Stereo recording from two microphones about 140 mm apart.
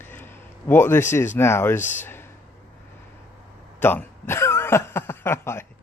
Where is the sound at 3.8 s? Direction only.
15° left (ahead or behind).